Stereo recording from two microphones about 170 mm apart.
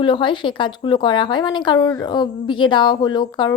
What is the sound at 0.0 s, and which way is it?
Speech, 30° left (ahead or behind).